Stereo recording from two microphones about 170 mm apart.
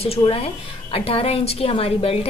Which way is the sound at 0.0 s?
35° left (ahead or behind).